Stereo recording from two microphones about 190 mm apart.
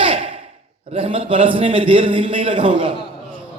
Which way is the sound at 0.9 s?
30° right (ahead or behind).